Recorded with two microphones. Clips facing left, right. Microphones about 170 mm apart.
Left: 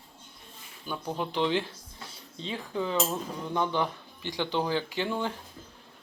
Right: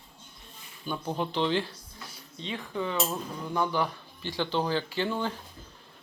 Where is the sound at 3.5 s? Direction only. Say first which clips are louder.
Even; 20° left (ahead or behind).